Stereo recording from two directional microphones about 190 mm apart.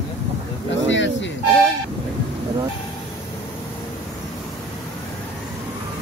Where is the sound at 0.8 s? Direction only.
75° left (ahead or behind).